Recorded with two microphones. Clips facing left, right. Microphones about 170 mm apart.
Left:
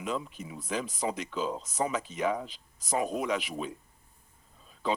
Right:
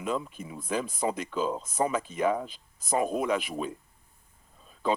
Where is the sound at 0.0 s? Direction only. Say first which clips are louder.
Right 3 dB; 50° right (ahead or behind).